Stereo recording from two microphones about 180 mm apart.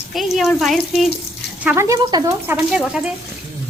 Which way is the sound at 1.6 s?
15° right (ahead or behind).